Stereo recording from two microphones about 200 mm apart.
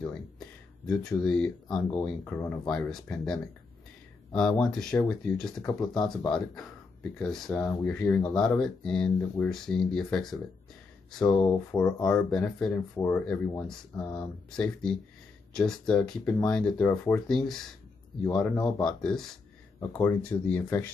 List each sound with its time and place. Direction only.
0.8 s speech: 5° left (ahead or behind)
5.7 s speech: 20° left (ahead or behind)
6.0 s speech: 5° left (ahead or behind)